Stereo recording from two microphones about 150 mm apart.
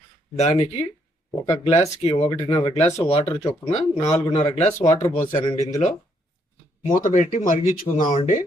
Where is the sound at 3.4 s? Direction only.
25° left (ahead or behind).